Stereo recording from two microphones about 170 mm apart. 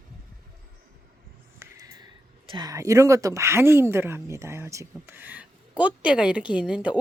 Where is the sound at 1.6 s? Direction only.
20° right (ahead or behind).